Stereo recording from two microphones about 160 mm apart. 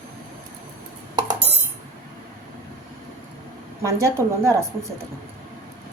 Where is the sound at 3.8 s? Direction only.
20° right (ahead or behind).